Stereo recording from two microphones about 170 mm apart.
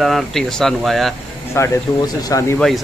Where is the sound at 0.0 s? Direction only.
Centre (ahead or behind).